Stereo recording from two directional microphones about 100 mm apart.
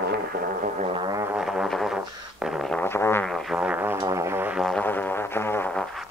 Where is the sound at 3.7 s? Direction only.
20° right (ahead or behind).